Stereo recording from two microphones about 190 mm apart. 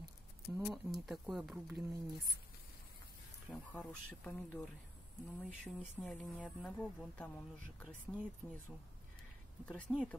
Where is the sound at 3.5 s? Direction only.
Centre (ahead or behind).